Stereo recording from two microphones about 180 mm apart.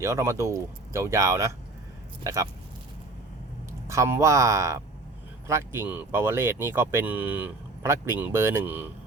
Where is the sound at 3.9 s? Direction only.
15° right (ahead or behind).